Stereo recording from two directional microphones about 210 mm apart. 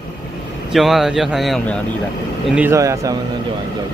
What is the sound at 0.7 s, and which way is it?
Speech, centre (ahead or behind).